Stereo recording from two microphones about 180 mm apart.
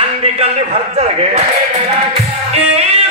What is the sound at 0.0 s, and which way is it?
A man's voice, 35° right (ahead or behind).